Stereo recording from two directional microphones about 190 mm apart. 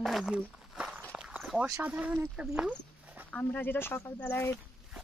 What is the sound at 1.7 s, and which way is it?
Speech, 10° right (ahead or behind).